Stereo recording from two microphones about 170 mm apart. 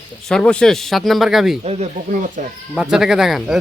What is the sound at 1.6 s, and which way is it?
Speech, 40° right (ahead or behind).